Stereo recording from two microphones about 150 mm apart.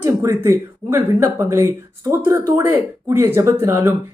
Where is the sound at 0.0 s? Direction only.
20° right (ahead or behind).